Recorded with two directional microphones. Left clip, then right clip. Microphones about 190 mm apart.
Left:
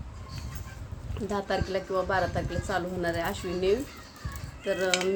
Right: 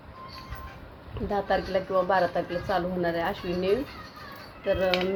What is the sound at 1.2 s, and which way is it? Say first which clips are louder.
A woman's voice: right 3 dB; 10° left (ahead or behind).